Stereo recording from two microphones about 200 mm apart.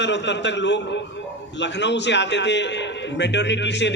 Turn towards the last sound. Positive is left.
turn(degrees=60)  # may be behind; listen again after turning